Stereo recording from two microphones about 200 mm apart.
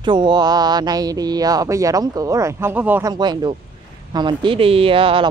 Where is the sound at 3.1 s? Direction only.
20° right (ahead or behind).